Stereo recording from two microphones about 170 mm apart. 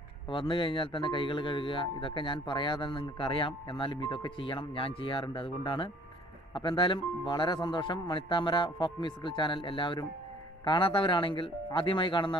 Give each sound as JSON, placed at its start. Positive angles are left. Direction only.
{"t": 0.3, "sound": "a man's voice", "side_deg": 30}